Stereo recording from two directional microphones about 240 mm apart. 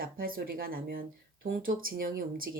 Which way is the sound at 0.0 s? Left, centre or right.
Right.